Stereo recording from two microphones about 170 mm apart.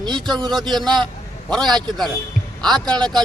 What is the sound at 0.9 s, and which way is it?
Speech, 25° right (ahead or behind).